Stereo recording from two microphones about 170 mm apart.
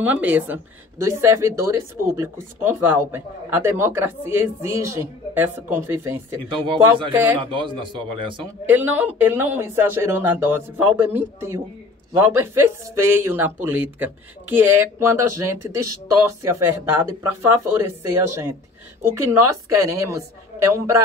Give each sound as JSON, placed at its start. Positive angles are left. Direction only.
{"t": 0.0, "sound": "a woman's voice", "side_deg": -10}
{"t": 6.6, "sound": "a man's voice", "side_deg": -30}
{"t": 8.6, "sound": "a woman's voice", "side_deg": -10}